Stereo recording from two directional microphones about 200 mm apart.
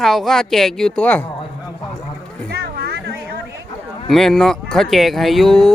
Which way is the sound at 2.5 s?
55° right (ahead or behind).